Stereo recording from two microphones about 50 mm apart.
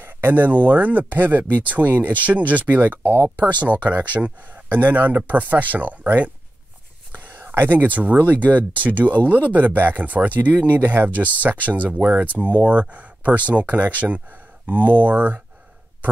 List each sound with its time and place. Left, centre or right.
0.0 s speech: right